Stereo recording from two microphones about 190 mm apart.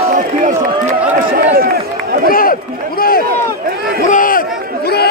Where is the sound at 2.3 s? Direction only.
50° left (ahead or behind).